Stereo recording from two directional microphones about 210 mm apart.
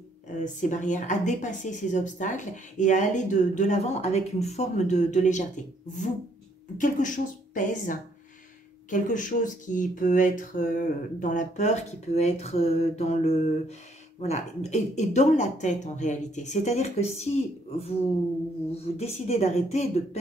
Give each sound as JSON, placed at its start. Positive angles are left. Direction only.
{"t": 0.4, "sound": "a woman's voice", "side_deg": 35}
{"t": 6.8, "sound": "a woman's voice", "side_deg": 35}
{"t": 18.9, "sound": "a woman's voice", "side_deg": 30}